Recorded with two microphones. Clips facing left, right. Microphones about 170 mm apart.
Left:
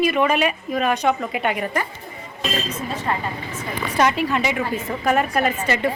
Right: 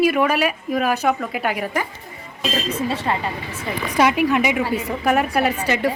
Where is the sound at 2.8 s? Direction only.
30° right (ahead or behind).